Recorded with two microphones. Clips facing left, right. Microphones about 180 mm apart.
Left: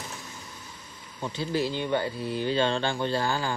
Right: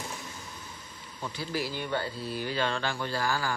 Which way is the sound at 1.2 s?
25° left (ahead or behind).